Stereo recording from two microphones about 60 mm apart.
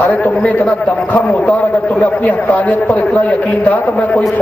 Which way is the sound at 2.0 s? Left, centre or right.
Left.